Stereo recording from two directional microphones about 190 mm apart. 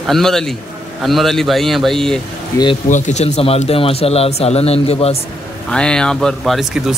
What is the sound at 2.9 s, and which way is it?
Speech, 35° left (ahead or behind).